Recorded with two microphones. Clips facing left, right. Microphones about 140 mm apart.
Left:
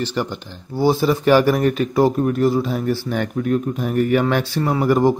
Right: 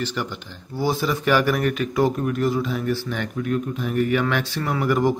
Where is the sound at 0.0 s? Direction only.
35° left (ahead or behind).